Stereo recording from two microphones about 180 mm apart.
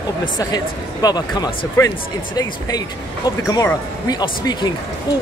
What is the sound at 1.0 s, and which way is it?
Speech, 20° left (ahead or behind).